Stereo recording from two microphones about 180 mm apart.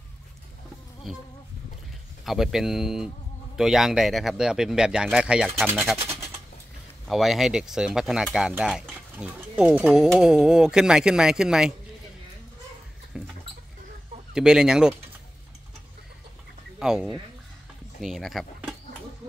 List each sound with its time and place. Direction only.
2.2 s speech: centre (ahead or behind)
5.9 s pigeon: 15° right (ahead or behind)
7.1 s speech: centre (ahead or behind)
13.1 s rodents: 5° right (ahead or behind)
14.3 s speech: 5° right (ahead or behind)
16.8 s speech: centre (ahead or behind)